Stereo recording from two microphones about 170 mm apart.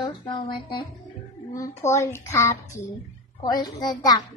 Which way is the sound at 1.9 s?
15° left (ahead or behind).